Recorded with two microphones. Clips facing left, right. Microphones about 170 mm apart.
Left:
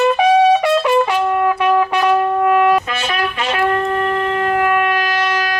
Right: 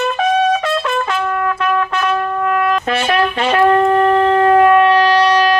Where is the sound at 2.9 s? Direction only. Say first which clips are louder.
Right 5 dB; 35° right (ahead or behind).